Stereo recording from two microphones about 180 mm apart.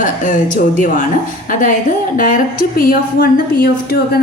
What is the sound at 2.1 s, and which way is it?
A woman's voice, 50° left (ahead or behind).